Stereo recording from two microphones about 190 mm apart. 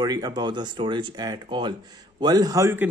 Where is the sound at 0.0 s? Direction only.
20° right (ahead or behind).